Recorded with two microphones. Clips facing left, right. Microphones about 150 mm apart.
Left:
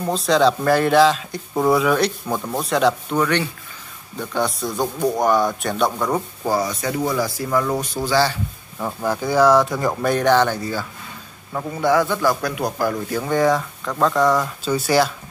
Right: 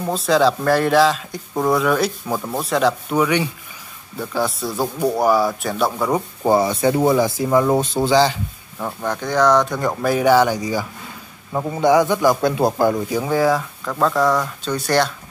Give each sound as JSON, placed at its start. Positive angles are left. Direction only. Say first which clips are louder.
{"t": 0.0, "sound": "speech", "louder": "even", "side_deg": -5}
{"t": 3.2, "sound": "speech", "louder": "right 2 dB", "side_deg": -10}
{"t": 6.4, "sound": "speech", "louder": "right 8 dB", "side_deg": -25}
{"t": 8.7, "sound": "speech", "louder": "left 1 dB", "side_deg": 5}
{"t": 13.1, "sound": "speech", "louder": "right 1 dB", "side_deg": -10}